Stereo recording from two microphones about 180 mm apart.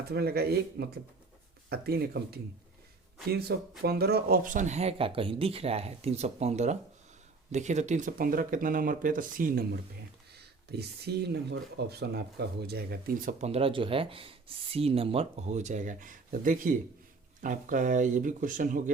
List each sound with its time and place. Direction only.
0.0 s speech: 60° right (ahead or behind)
10.3 s speech: 65° right (ahead or behind)
13.4 s speech: 35° right (ahead or behind)